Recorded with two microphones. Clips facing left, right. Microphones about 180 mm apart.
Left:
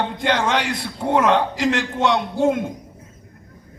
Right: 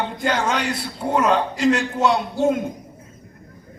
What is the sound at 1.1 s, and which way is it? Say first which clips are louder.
A man's voice: left 2 dB; 90° left.